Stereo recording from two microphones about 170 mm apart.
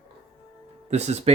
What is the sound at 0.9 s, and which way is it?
Speech, 40° right (ahead or behind).